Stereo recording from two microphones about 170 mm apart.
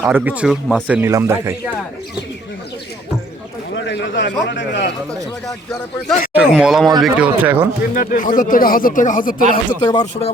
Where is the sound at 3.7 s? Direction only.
90° left.